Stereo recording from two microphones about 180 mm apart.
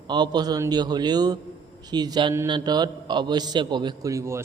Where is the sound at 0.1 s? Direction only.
25° right (ahead or behind).